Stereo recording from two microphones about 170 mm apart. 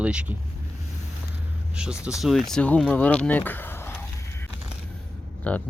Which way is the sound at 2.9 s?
10° left (ahead or behind).